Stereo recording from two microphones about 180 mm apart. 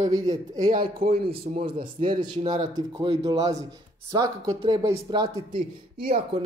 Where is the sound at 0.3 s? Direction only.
25° right (ahead or behind).